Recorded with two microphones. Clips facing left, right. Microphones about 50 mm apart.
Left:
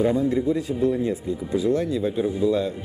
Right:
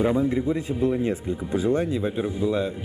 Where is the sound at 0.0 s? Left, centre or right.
Centre.